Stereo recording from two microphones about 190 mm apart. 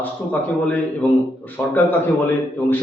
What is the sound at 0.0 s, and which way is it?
A man's voice, 10° left (ahead or behind).